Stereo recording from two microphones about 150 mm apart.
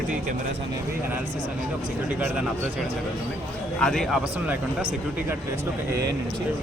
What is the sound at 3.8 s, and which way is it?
Speech, centre (ahead or behind).